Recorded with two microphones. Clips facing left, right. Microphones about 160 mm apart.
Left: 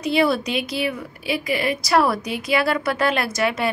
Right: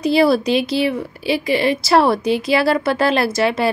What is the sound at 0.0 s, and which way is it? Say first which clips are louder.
A woman's voice: right 5 dB; 35° right (ahead or behind).